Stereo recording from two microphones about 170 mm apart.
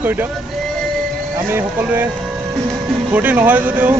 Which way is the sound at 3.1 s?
10° right (ahead or behind).